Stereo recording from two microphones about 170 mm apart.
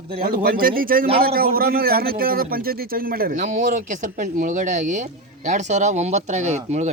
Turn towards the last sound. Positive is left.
turn(degrees=-40)  # may be behind; listen again after turning